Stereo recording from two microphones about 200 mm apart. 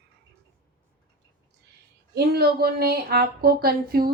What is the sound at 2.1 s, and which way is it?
Speech, 50° right (ahead or behind).